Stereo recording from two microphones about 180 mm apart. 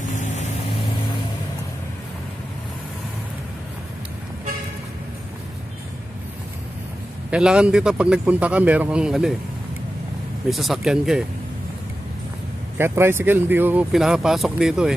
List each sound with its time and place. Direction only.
0.1 s vehicle: 45° left (ahead or behind)
7.2 s speech: 5° right (ahead or behind)
10.5 s speech: centre (ahead or behind)
12.7 s speech: 15° right (ahead or behind)